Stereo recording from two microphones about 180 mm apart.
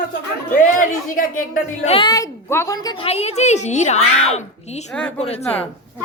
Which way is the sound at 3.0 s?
35° left (ahead or behind).